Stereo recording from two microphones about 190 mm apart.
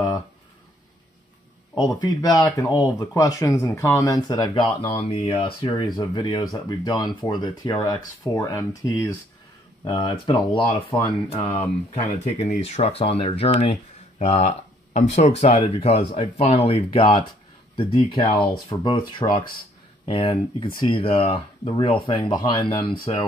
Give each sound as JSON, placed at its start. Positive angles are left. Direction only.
{"t": 2.0, "sound": "speech", "side_deg": 20}